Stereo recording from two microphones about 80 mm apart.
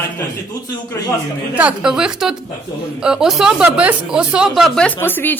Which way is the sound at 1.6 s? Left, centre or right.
Centre.